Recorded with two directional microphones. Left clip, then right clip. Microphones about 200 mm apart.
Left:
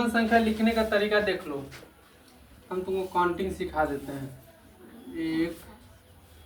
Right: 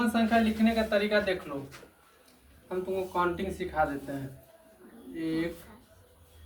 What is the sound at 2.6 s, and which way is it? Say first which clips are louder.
Speech: left 2 dB; 20° right (ahead or behind).